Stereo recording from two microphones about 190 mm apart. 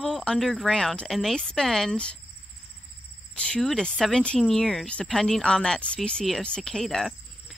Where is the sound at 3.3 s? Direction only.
5° left (ahead or behind).